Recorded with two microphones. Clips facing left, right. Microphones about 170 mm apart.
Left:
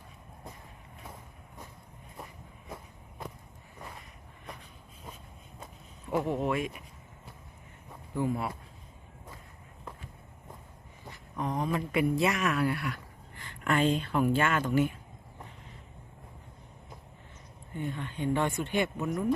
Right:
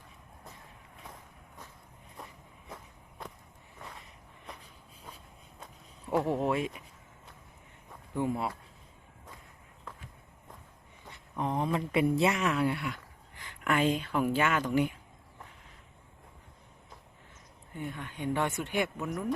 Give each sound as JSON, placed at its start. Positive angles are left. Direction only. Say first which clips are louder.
{"t": 2.6, "sound": "walk", "louder": "left 3 dB", "side_deg": 10}
{"t": 6.1, "sound": "speech", "louder": "right 1 dB", "side_deg": 0}
{"t": 6.4, "sound": "speech", "louder": "right 1 dB", "side_deg": -30}
{"t": 8.2, "sound": "speech", "louder": "left 1 dB", "side_deg": -25}
{"t": 11.4, "sound": "speech", "louder": "right 1 dB", "side_deg": -25}
{"t": 17.7, "sound": "speech", "louder": "left 3 dB", "side_deg": -10}
{"t": 18.9, "sound": "speech", "louder": "left 3 dB", "side_deg": 0}